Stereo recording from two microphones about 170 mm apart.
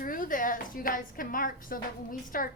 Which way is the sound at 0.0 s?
55° left (ahead or behind).